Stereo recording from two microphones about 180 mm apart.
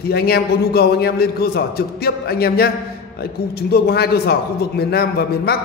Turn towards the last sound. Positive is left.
turn(degrees=60)  # may be behind; listen again after turning